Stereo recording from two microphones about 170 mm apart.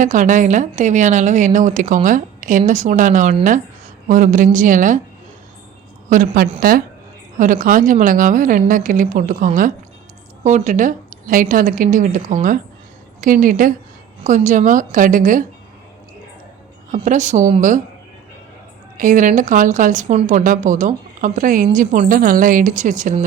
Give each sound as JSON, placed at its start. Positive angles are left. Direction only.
{"t": 0.0, "sound": "a woman's voice", "side_deg": -50}
{"t": 6.6, "sound": "a woman's voice", "side_deg": -60}
{"t": 16.9, "sound": "a woman's voice", "side_deg": -45}
{"t": 18.9, "sound": "a woman's voice", "side_deg": -50}